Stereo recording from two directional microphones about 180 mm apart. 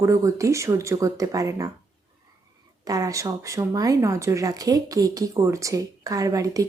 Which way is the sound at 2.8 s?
20° right (ahead or behind).